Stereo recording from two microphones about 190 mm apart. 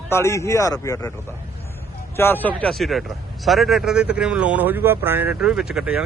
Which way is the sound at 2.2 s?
10° left (ahead or behind).